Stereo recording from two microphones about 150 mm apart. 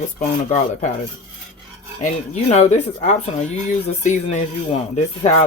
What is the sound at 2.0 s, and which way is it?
Speech, 50° left (ahead or behind).